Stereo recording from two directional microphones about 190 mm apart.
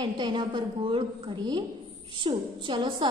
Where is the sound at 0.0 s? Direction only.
25° right (ahead or behind).